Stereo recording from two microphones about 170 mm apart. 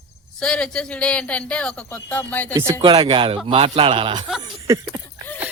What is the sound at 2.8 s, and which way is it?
Speech, 25° right (ahead or behind).